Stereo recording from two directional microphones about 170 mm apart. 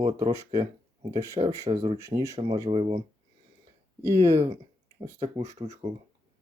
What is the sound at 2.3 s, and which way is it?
Speech, 30° right (ahead or behind).